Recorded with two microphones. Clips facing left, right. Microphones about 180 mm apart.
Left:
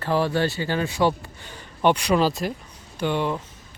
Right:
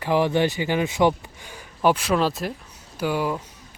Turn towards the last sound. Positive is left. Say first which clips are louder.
# even
turn(degrees=-5)  # may be behind; listen again after turning